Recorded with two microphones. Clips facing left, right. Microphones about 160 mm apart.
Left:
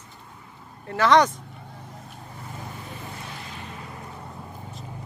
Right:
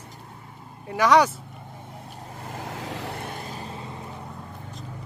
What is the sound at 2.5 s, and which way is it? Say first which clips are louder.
Vehicle: right 6 dB; 85° right.